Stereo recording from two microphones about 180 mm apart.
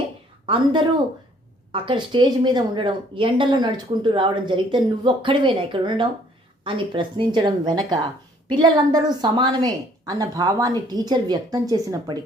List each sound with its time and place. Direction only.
0.4 s speech: 25° right (ahead or behind)